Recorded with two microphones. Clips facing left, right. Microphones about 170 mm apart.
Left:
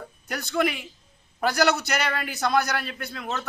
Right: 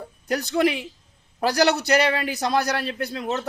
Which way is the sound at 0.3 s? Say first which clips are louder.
Right 4 dB; 35° right (ahead or behind).